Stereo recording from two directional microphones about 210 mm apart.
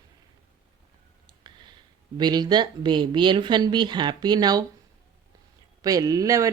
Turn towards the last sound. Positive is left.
turn(degrees=-15)  # may be behind; listen again after turning